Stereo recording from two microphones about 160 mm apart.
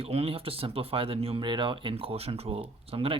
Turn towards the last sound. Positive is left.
turn(degrees=-35)  # may be behind; listen again after turning